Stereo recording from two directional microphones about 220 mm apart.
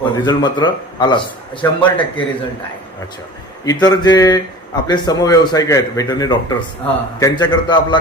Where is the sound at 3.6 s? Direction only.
20° left (ahead or behind).